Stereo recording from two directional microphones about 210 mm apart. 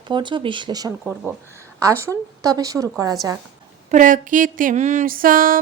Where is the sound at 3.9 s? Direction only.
40° right (ahead or behind).